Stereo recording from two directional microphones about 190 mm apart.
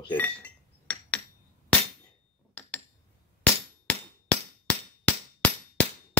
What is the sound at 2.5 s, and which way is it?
Cutlery, 5° left (ahead or behind).